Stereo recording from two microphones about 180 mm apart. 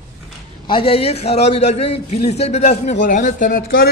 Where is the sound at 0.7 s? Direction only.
30° left (ahead or behind).